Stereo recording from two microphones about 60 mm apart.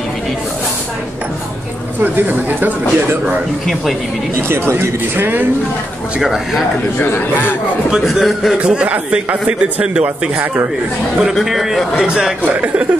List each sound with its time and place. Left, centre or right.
2.0 s a man's voice: right
4.4 s speech: right
5.2 s speech: right
6.1 s speech: centre
7.0 s a man's voice: left
8.0 s a man's voice: centre
8.5 s a man's voice: centre
11.1 s a man's voice: centre
12.4 s a man's voice: right